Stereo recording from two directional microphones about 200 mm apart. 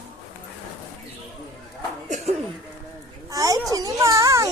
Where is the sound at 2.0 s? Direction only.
35° right (ahead or behind).